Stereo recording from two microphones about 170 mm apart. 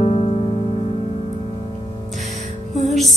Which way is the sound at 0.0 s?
35° left (ahead or behind).